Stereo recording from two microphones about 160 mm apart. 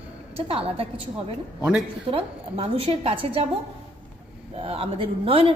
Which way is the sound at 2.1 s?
40° right (ahead or behind).